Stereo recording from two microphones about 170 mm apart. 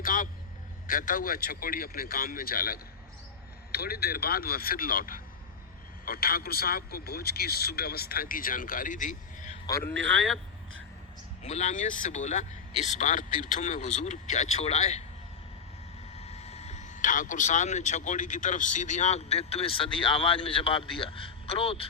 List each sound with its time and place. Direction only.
0.0 s vehicle: 55° left (ahead or behind)
0.9 s a man's voice: 50° left (ahead or behind)
9.6 s speech: 15° left (ahead or behind)
10.1 s speech: 5° left (ahead or behind)
11.4 s speech: 40° left (ahead or behind)
16.1 s speech: 40° left (ahead or behind)